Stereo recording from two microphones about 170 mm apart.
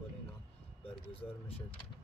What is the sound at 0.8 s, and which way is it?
Speech, 35° left (ahead or behind).